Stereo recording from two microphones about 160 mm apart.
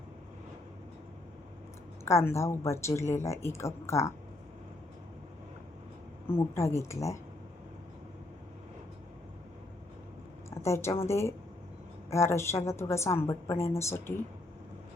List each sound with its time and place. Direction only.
2.0 s speech: 15° left (ahead or behind)
6.2 s speech: 15° left (ahead or behind)
10.5 s a woman's voice: 15° left (ahead or behind)